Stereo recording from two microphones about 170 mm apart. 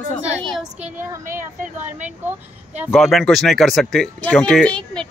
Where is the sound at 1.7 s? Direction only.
10° right (ahead or behind).